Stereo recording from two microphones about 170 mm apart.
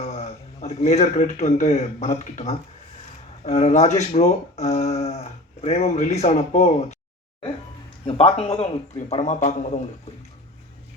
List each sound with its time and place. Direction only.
0.0 s a man's voice: 40° left (ahead or behind)
8.0 s speech: 35° left (ahead or behind)